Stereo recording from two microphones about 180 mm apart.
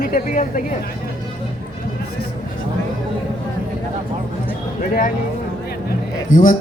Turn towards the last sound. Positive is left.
turn(degrees=45)  # may be behind; listen again after turning